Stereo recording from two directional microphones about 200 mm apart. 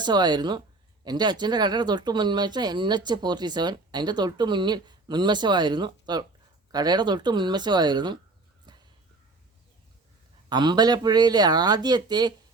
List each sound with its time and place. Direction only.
0.0 s speech: 20° right (ahead or behind)
10.5 s speech: 20° right (ahead or behind)